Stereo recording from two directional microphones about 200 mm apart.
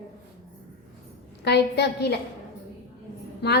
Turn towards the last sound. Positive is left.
turn(degrees=55)  # may be behind; listen again after turning